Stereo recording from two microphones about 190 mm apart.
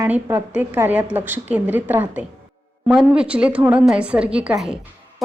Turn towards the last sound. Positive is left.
turn(degrees=-5)  # may be behind; listen again after turning